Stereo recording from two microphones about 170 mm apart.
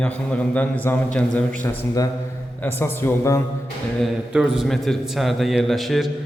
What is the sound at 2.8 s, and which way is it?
Speech, 15° left (ahead or behind).